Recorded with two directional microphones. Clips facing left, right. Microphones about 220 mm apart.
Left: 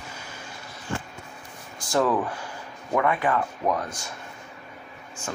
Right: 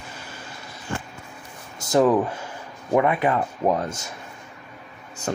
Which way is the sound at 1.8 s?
20° right (ahead or behind).